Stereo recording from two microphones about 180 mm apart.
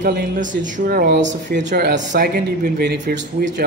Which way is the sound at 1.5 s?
45° right (ahead or behind).